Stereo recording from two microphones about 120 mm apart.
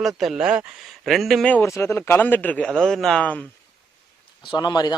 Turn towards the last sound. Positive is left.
turn(degrees=35)  # may be behind; listen again after turning